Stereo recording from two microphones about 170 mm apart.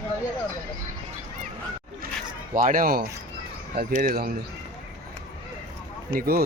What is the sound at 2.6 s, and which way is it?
Speech, 55° right (ahead or behind).